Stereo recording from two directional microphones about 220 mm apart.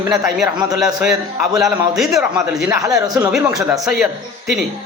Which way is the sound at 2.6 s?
15° right (ahead or behind).